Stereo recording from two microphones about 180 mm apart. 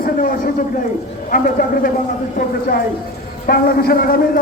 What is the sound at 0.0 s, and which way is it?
A man's voice, 50° left (ahead or behind).